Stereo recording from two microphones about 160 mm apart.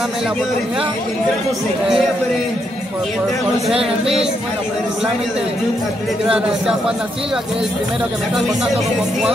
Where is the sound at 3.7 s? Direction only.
35° right (ahead or behind).